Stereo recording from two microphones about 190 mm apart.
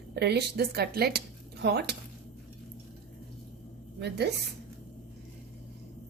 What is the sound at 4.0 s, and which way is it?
Speech, 60° right (ahead or behind).